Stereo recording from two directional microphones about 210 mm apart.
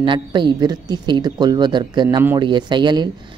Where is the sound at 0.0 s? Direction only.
20° right (ahead or behind).